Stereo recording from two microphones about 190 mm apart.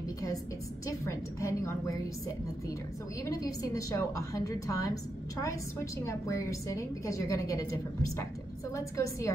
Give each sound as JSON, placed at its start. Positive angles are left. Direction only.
{"t": 0.8, "sound": "a woman's voice", "side_deg": 15}
{"t": 3.3, "sound": "a woman's voice", "side_deg": 20}